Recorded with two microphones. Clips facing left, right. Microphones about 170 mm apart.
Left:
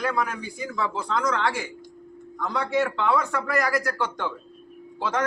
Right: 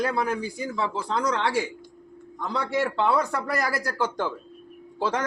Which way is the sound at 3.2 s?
35° right (ahead or behind).